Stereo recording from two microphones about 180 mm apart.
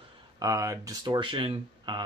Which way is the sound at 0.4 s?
20° right (ahead or behind).